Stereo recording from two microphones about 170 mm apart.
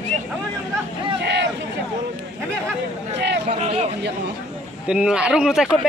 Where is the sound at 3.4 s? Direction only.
40° right (ahead or behind).